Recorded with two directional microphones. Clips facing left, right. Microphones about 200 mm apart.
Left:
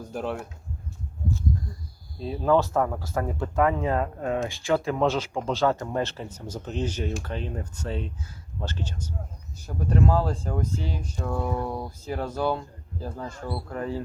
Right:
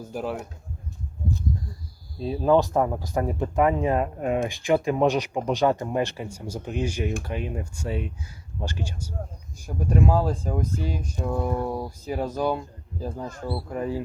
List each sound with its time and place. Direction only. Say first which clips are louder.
0.0 s speech: right 1 dB; 5° right (ahead or behind)
2.2 s speech: right 2 dB; 20° right (ahead or behind)